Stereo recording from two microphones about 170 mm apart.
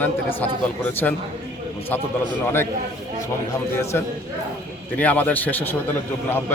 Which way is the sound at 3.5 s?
15° left (ahead or behind).